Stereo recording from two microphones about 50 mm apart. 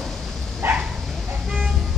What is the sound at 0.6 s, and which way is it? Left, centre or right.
Bow-wow, right.